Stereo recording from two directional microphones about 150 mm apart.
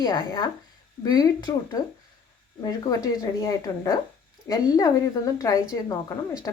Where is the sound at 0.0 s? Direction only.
25° left (ahead or behind).